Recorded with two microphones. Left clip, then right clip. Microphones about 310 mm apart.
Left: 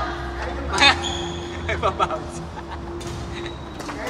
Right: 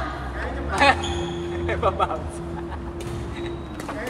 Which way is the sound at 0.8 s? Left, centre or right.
Centre.